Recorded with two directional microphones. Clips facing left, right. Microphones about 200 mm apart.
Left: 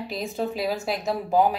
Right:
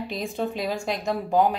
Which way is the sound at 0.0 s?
Centre (ahead or behind).